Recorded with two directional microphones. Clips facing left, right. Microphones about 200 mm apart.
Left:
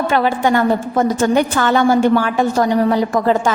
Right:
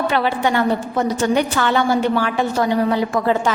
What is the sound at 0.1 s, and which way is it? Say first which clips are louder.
A woman's voice: left 3 dB; 45° left (ahead or behind).